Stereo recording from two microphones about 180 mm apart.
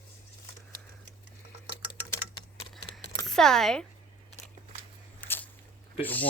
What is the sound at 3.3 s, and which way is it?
Speech, centre (ahead or behind).